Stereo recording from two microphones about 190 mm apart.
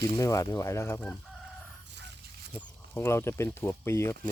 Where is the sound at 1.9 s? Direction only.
65° right (ahead or behind).